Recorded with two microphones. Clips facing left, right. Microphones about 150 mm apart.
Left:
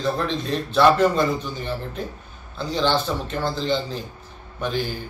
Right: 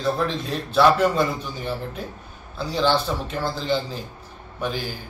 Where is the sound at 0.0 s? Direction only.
5° right (ahead or behind).